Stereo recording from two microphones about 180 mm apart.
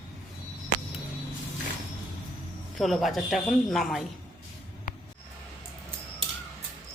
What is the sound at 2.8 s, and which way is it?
Speech, centre (ahead or behind).